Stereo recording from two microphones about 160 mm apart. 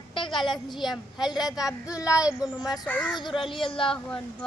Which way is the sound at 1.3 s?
25° left (ahead or behind).